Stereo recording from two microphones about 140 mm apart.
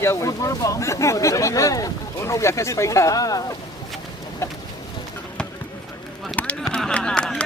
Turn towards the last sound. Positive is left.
turn(degrees=5)  # may be behind; listen again after turning